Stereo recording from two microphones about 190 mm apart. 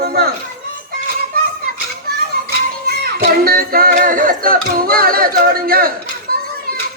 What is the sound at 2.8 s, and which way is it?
Speech, 55° right (ahead or behind).